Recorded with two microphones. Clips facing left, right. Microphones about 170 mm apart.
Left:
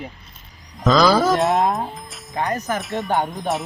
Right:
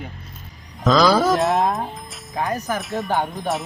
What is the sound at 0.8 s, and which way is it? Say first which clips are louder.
Speech: even; centre (ahead or behind).